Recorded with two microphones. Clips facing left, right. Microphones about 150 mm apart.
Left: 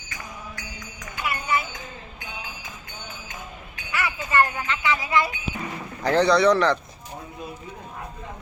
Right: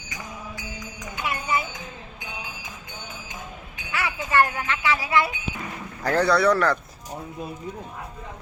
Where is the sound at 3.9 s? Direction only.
15° right (ahead or behind).